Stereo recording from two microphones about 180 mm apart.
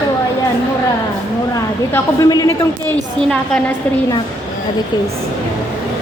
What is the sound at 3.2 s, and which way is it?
Speech, 5° left (ahead or behind).